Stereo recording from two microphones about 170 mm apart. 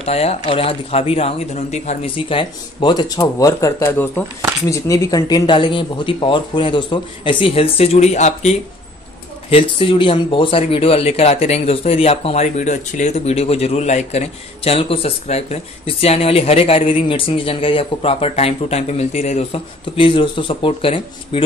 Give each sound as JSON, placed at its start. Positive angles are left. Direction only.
{"t": 0.0, "sound": "speech", "side_deg": 35}